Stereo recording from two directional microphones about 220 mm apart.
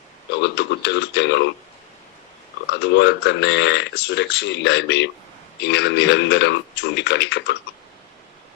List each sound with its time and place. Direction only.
0.4 s speech: 50° left (ahead or behind)
2.8 s speech: 50° left (ahead or behind)